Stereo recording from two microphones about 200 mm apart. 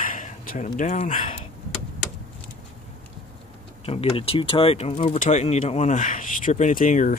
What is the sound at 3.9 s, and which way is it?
Speech, 30° left (ahead or behind).